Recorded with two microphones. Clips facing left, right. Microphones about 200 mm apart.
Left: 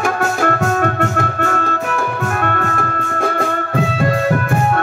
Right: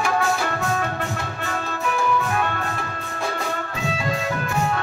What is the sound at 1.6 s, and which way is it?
Music, 50° left (ahead or behind).